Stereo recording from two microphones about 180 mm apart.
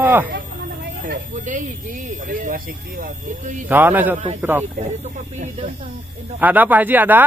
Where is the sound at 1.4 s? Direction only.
45° right (ahead or behind).